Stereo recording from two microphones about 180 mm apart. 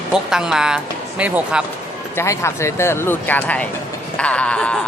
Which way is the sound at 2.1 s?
15° left (ahead or behind).